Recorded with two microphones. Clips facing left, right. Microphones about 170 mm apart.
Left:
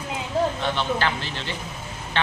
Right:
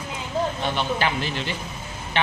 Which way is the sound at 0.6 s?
15° right (ahead or behind).